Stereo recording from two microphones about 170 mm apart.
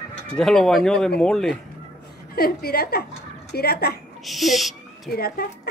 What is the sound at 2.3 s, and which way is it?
A woman's voice, 65° left (ahead or behind).